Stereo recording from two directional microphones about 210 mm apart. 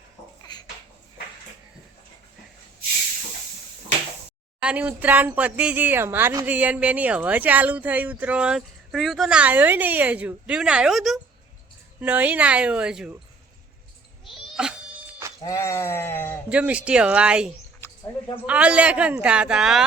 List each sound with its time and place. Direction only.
0.5 s a sound: 20° left (ahead or behind)
4.6 s speech: 5° right (ahead or behind)
14.3 s cat: 5° right (ahead or behind)
15.4 s sheep: 15° left (ahead or behind)
16.5 s speech: 5° right (ahead or behind)